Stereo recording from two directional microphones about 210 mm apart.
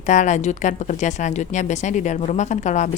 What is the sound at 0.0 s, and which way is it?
Speech, 35° left (ahead or behind).